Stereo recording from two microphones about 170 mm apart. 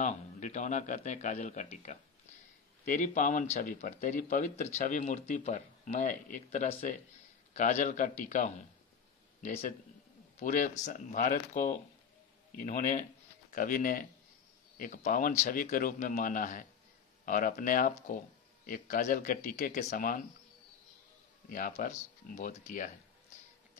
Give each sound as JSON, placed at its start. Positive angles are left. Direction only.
{"t": 0.0, "sound": "speech", "side_deg": 45}
{"t": 10.4, "sound": "speech", "side_deg": 50}
{"t": 21.5, "sound": "speech", "side_deg": 55}